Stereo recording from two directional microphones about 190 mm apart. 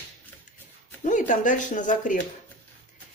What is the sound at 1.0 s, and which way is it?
Speech, 40° left (ahead or behind).